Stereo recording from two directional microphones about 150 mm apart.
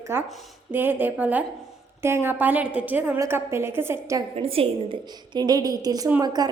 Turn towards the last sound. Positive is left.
turn(degrees=-25)  # may be behind; listen again after turning